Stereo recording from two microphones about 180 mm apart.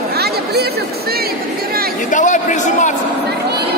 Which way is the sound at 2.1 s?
45° left (ahead or behind).